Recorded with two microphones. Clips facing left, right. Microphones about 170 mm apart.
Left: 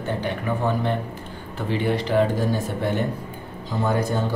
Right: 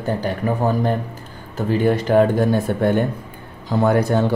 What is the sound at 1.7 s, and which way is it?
Speech, 45° right (ahead or behind).